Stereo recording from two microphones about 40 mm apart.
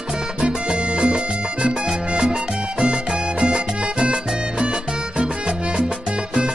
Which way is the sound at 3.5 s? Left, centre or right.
Centre.